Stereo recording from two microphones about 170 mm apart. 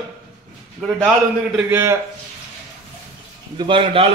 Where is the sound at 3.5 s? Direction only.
30° right (ahead or behind).